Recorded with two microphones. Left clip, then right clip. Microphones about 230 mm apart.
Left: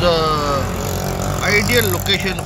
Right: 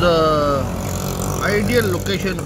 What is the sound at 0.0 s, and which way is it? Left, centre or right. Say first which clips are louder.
Vehicle: right 1 dB; centre.